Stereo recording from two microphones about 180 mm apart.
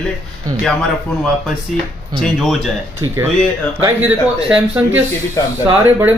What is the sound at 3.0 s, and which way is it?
Speech, 15° right (ahead or behind).